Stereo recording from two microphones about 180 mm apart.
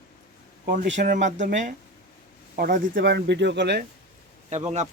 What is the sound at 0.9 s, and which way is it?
Speech, 45° right (ahead or behind).